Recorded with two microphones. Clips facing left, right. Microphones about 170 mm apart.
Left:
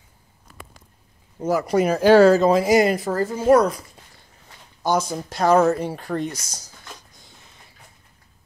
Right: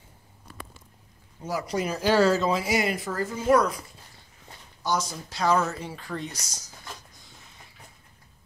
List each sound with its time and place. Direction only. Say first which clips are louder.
1.4 s speech: left 9 dB; 50° left (ahead or behind)
4.8 s speech: left 7 dB; 50° left (ahead or behind)